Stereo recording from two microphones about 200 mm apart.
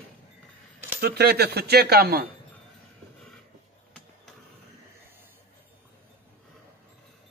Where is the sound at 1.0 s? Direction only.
50° right (ahead or behind).